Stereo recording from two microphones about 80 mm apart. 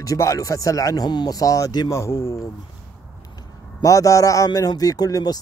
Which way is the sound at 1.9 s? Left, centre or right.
Left.